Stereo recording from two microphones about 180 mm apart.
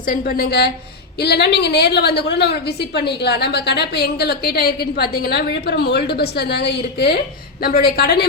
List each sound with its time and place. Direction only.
0.0 s a woman's voice: 50° left (ahead or behind)